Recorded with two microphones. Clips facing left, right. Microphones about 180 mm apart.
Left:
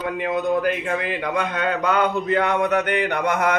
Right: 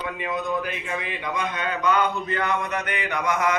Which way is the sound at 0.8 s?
65° left (ahead or behind).